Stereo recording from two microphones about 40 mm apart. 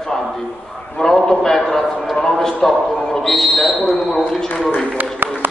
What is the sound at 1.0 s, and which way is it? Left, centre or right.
A man's voice, centre.